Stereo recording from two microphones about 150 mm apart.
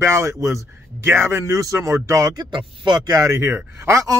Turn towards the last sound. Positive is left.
turn(degrees=-20)  # may be behind; listen again after turning